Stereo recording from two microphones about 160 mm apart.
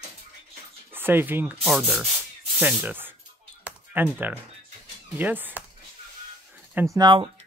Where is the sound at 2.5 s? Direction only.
10° right (ahead or behind).